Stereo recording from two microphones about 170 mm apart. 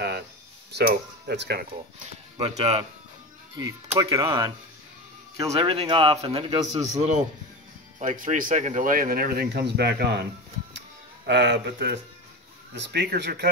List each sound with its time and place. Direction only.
0.7 s speech: 75° right (ahead or behind)
2.3 s speech: 35° right (ahead or behind)
3.9 s speech: 20° right (ahead or behind)
5.5 s speech: 35° right (ahead or behind)
6.8 s a man's voice: 45° right (ahead or behind); by 10.2 s 75° right (ahead or behind)
11.2 s speech: 90° right; by 13.5 s 70° right (ahead or behind)